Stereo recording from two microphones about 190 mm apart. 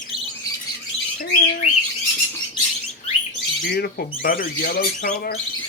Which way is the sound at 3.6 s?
55° left (ahead or behind).